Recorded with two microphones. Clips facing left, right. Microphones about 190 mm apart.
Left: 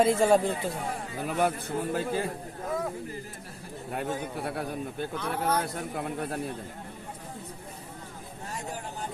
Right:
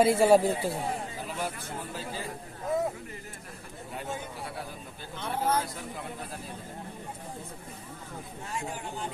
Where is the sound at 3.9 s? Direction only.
60° left (ahead or behind).